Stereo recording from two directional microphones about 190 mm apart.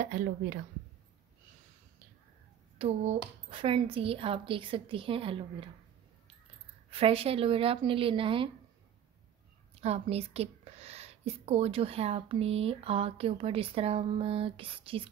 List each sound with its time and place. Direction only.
0.0 s speech: 45° right (ahead or behind)
2.8 s speech: 30° right (ahead or behind)
6.9 s speech: 30° right (ahead or behind)
9.8 s a woman's voice: 35° right (ahead or behind)